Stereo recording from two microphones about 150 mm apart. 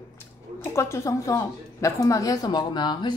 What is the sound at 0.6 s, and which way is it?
A woman's voice, 20° left (ahead or behind).